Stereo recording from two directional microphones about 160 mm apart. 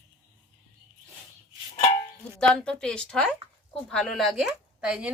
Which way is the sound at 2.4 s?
5° left (ahead or behind).